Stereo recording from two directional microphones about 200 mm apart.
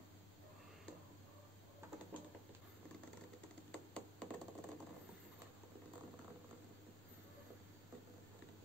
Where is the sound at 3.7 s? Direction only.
5° left (ahead or behind).